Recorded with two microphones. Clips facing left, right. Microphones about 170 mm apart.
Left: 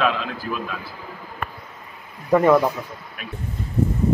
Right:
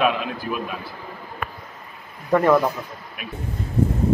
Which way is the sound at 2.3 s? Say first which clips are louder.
Left 1 dB; 10° left (ahead or behind).